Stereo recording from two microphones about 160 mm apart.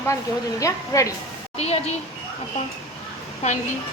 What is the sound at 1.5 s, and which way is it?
Speech, 40° left (ahead or behind).